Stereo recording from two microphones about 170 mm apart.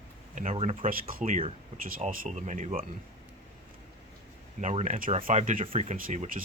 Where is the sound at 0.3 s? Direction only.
40° right (ahead or behind).